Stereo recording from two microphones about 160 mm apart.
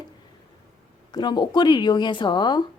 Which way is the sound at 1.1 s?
25° left (ahead or behind).